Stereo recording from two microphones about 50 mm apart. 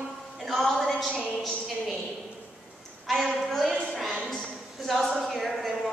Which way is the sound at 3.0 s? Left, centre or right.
Centre.